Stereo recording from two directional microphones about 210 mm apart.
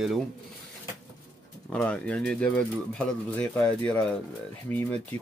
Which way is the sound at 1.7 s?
5° left (ahead or behind).